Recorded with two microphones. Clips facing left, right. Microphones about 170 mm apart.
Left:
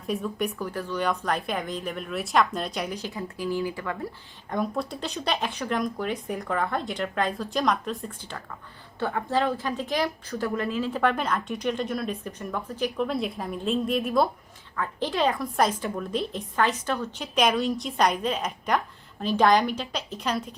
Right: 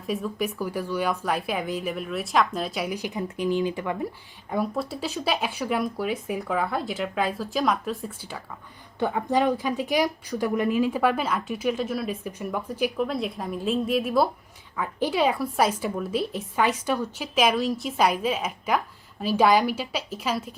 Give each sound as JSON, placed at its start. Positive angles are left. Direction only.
{"t": 0.0, "sound": "a woman's voice", "side_deg": 0}
{"t": 4.5, "sound": "speech", "side_deg": -5}
{"t": 9.0, "sound": "a woman's voice", "side_deg": -15}